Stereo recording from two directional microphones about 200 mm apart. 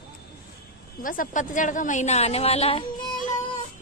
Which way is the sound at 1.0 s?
40° left (ahead or behind).